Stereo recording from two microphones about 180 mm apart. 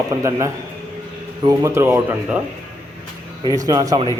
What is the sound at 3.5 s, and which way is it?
Speech, 20° right (ahead or behind).